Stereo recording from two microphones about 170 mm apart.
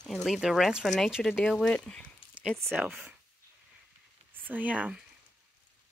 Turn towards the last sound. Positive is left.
turn(degrees=-10)  # may be behind; listen again after turning